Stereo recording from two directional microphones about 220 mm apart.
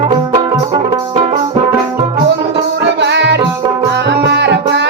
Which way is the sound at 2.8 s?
50° right (ahead or behind).